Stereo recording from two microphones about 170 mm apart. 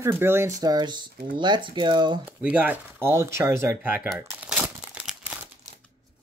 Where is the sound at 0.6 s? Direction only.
25° right (ahead or behind).